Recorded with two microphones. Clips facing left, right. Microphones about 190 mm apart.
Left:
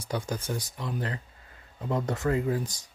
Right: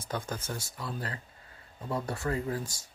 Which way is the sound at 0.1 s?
15° left (ahead or behind).